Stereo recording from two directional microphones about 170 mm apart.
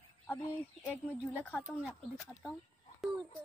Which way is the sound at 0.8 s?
5° left (ahead or behind).